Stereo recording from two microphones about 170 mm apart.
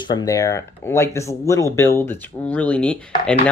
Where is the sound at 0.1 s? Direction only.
20° left (ahead or behind).